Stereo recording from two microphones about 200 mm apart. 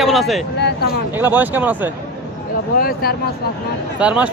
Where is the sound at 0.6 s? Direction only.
50° left (ahead or behind).